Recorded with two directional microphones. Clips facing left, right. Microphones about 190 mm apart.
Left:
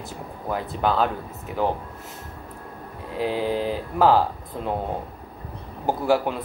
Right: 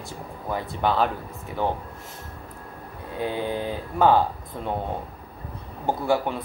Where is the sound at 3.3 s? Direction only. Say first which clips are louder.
Left 3 dB; 5° left (ahead or behind).